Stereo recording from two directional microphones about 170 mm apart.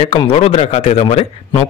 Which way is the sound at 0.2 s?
35° left (ahead or behind).